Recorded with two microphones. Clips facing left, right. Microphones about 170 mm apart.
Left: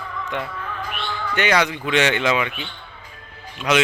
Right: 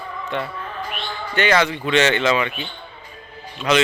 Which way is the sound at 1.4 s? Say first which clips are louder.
Right 2 dB; 10° left (ahead or behind).